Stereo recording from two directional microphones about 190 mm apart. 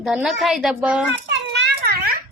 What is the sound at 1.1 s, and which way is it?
Children playing, 70° right (ahead or behind).